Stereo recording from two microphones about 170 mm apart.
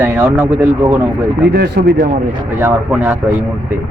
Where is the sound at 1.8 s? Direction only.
70° right (ahead or behind).